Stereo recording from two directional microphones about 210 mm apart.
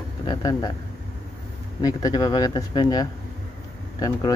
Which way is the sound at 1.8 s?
20° left (ahead or behind).